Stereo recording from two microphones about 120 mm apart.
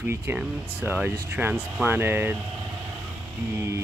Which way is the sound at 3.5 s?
20° right (ahead or behind).